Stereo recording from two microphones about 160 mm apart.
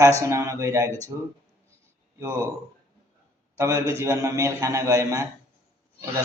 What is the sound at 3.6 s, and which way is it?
A man's voice, 20° right (ahead or behind).